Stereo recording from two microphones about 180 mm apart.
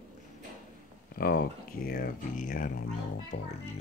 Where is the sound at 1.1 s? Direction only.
55° left (ahead or behind); by 3.5 s 40° left (ahead or behind).